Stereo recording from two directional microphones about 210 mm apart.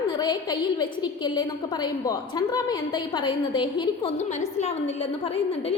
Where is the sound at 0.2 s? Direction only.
20° left (ahead or behind).